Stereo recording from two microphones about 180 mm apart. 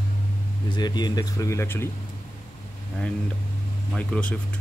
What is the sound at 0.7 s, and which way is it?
Speech, 25° left (ahead or behind).